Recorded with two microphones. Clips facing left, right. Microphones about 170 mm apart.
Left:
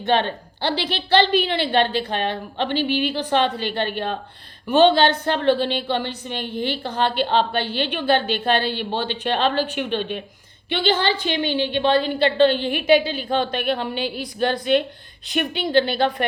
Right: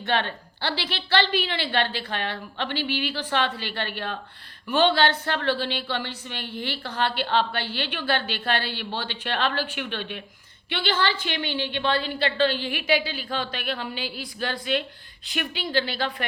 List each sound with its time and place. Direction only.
0.0 s a woman's voice: 20° left (ahead or behind)